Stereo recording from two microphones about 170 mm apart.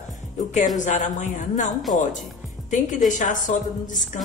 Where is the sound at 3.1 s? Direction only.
45° left (ahead or behind).